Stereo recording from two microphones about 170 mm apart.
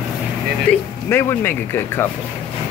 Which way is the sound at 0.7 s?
10° left (ahead or behind).